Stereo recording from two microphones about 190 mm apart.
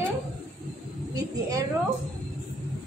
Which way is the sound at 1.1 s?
20° right (ahead or behind).